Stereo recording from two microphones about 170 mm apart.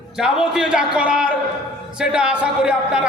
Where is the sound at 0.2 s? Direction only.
5° right (ahead or behind).